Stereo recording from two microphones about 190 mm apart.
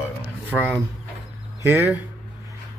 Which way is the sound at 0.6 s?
10° right (ahead or behind).